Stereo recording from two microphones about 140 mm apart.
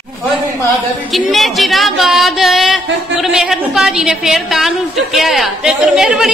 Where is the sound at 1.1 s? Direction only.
Centre (ahead or behind).